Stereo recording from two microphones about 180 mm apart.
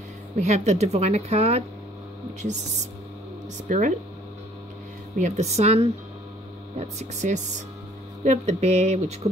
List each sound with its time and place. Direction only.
0.4 s speech: 40° right (ahead or behind)
3.6 s speech: 45° right (ahead or behind)
5.2 s speech: 40° right (ahead or behind)
7.0 s speech: 40° right (ahead or behind)